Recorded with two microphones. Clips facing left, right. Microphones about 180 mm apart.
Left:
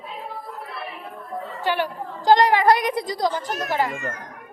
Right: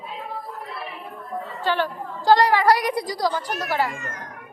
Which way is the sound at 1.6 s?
15° left (ahead or behind).